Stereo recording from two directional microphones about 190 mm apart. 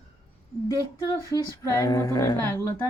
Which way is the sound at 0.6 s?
15° left (ahead or behind).